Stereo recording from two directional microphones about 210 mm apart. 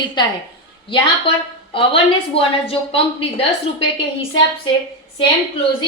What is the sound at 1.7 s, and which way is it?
A woman's voice, 25° left (ahead or behind).